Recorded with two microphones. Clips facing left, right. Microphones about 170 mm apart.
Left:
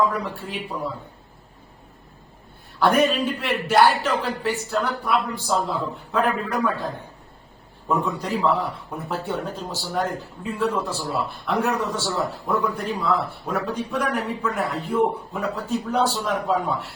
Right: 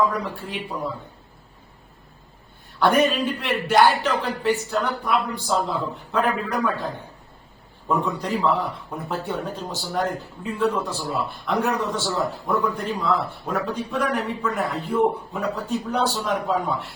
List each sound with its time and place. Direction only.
0.1 s a man's voice: 5° left (ahead or behind)
2.8 s a man's voice: centre (ahead or behind)
7.9 s a man's voice: centre (ahead or behind)